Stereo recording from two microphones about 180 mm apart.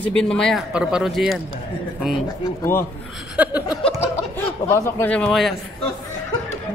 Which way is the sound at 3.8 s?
35° left (ahead or behind).